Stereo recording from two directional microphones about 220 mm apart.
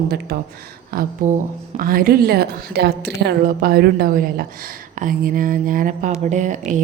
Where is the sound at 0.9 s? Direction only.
35° right (ahead or behind).